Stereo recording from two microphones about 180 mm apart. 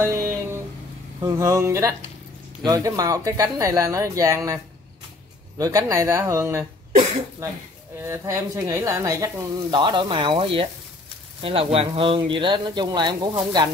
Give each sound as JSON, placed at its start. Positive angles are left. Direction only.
{"t": 0.0, "sound": "a sound", "side_deg": -15}
{"t": 1.2, "sound": "speech", "side_deg": -15}
{"t": 5.6, "sound": "speech", "side_deg": -20}
{"t": 8.0, "sound": "speech", "side_deg": -15}